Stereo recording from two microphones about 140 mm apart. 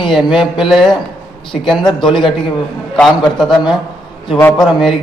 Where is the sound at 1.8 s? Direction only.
35° left (ahead or behind).